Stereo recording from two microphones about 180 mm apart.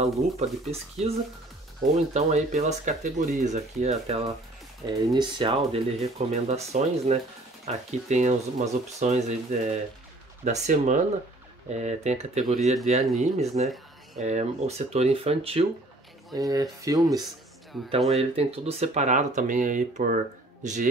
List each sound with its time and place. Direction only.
0.0 s speech: 35° right (ahead or behind)
4.8 s speech: 25° right (ahead or behind)
16.3 s speech: 20° right (ahead or behind)
17.7 s speech: centre (ahead or behind)
18.1 s speech: 35° right (ahead or behind)